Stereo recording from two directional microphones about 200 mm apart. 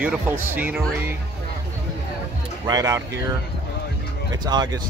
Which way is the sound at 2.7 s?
15° right (ahead or behind).